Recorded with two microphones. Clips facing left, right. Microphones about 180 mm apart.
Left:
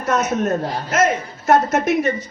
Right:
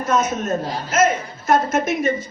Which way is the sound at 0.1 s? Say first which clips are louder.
Left 2 dB; 60° left (ahead or behind).